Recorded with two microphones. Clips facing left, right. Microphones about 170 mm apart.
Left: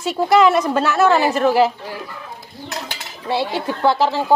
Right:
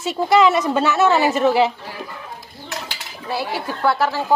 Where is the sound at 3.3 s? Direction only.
25° left (ahead or behind).